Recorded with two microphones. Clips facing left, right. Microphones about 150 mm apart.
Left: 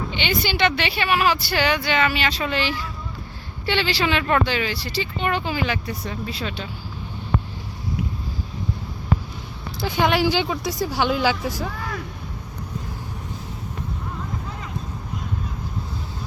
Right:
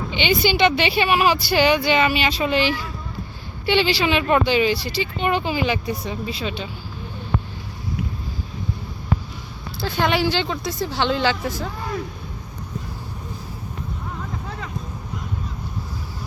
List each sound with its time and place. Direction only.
0.1 s speech: 15° right (ahead or behind)
9.8 s speech: 15° left (ahead or behind)